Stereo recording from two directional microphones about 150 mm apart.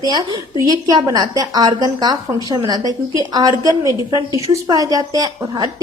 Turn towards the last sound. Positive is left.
turn(degrees=-25)  # may be behind; listen again after turning